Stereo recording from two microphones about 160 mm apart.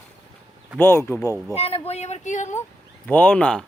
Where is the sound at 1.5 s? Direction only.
40° left (ahead or behind).